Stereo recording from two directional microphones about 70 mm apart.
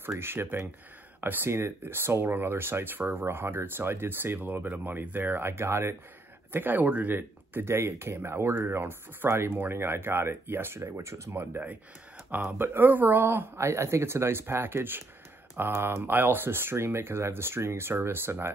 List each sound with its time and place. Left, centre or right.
0.1 s speech: right
11.5 s speech: right